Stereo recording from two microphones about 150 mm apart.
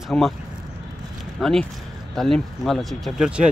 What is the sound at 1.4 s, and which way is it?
Speech, centre (ahead or behind).